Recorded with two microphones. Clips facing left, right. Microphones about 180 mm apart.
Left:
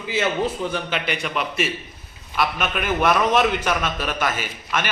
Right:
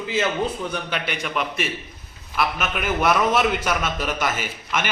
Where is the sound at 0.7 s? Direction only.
Centre (ahead or behind).